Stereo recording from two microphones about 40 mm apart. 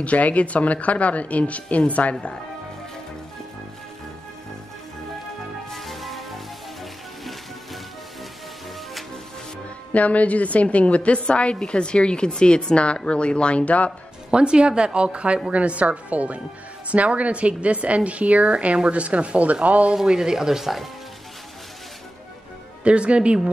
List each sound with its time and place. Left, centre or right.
0.0 s speech: left
5.7 s music: centre
9.9 s a woman's voice: left
14.3 s a woman's voice: right
20.1 s speech: centre
22.8 s speech: right